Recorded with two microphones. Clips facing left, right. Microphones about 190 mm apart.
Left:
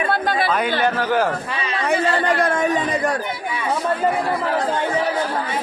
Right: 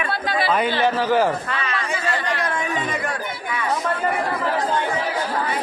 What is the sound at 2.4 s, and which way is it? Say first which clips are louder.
Speech: left 6 dB; 40° left (ahead or behind).